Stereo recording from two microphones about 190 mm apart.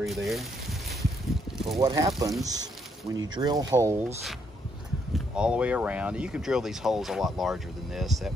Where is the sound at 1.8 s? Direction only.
20° right (ahead or behind).